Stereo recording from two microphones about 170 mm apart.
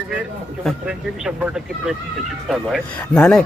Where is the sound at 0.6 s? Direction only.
5° right (ahead or behind).